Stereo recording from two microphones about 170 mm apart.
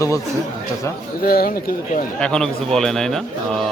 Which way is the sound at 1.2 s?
60° left (ahead or behind).